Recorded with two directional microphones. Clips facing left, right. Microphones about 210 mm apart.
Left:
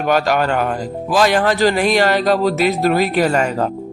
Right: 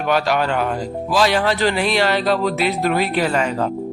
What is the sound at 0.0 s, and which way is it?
Speech, 45° left (ahead or behind).